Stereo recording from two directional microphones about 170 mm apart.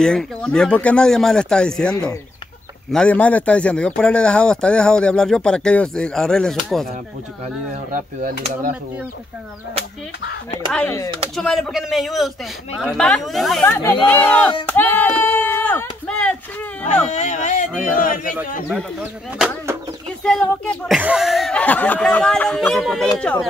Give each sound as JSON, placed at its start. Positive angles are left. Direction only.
{"t": 0.0, "sound": "speech", "side_deg": 5}
{"t": 7.7, "sound": "speech", "side_deg": -50}
{"t": 11.3, "sound": "speech", "side_deg": 0}
{"t": 16.8, "sound": "speech", "side_deg": 45}
{"t": 18.7, "sound": "speech", "side_deg": -5}